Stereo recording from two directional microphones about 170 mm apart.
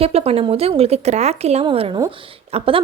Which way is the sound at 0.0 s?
35° right (ahead or behind).